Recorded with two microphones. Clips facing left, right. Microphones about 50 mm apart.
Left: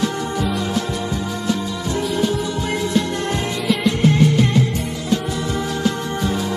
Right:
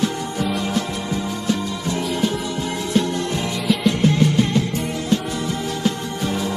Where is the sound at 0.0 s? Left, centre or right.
Left.